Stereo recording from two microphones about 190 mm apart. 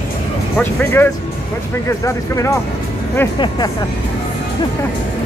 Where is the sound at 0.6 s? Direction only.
10° left (ahead or behind).